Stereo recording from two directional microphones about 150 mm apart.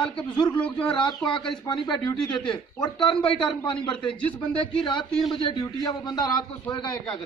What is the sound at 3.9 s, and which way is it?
Speech, 5° left (ahead or behind).